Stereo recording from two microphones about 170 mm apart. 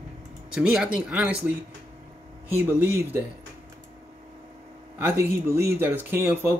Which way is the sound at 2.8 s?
10° right (ahead or behind).